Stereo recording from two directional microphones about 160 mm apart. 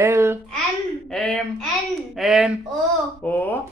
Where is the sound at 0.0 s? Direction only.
15° right (ahead or behind).